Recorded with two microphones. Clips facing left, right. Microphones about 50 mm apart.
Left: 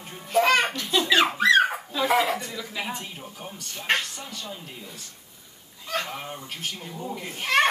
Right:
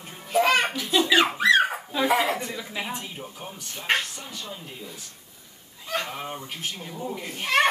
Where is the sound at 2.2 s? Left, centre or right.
Centre.